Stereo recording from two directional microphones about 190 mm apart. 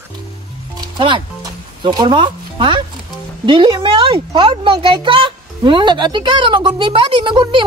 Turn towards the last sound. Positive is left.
turn(degrees=-25)  # may be behind; listen again after turning